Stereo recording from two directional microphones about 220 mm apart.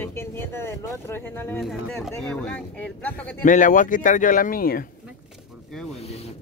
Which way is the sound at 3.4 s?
35° left (ahead or behind).